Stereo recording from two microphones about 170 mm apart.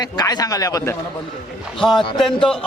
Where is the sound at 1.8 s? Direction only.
Centre (ahead or behind).